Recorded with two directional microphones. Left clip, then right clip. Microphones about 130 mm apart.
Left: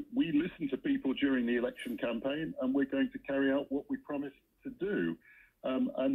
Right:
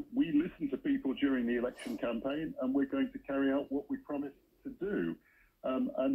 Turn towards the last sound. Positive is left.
turn(degrees=30)  # may be behind; listen again after turning